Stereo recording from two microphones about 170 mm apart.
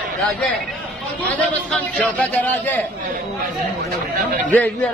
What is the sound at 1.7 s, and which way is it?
A man's voice, 5° left (ahead or behind).